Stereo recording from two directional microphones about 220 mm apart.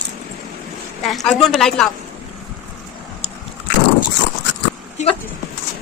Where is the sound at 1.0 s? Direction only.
Centre (ahead or behind).